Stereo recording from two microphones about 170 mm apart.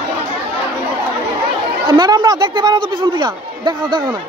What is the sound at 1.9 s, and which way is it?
Speech, 25° right (ahead or behind).